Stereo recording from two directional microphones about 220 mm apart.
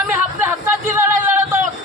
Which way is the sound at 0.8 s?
10° right (ahead or behind).